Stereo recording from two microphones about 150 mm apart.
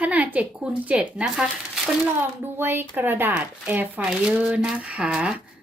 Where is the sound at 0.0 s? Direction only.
10° right (ahead or behind).